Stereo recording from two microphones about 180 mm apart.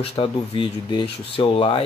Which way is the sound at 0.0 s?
30° left (ahead or behind).